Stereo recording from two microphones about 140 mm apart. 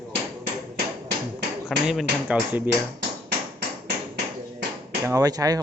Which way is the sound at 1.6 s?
5° right (ahead or behind).